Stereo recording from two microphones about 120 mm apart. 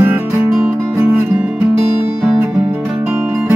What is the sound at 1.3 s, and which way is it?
Music, 10° right (ahead or behind).